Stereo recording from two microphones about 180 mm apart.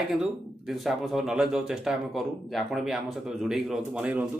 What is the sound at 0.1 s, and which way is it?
Speech, centre (ahead or behind).